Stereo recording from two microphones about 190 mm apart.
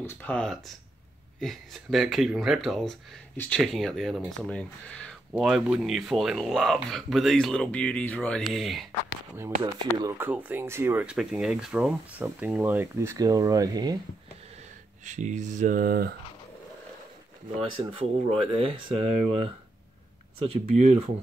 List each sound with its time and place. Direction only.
0.0 s speech: 10° left (ahead or behind)
5.3 s speech: 5° right (ahead or behind)
9.4 s speech: 20° right (ahead or behind)
10.1 s speech: 10° right (ahead or behind)
15.0 s speech: 40° right (ahead or behind)
17.6 s speech: 30° right (ahead or behind)
20.3 s speech: 35° right (ahead or behind)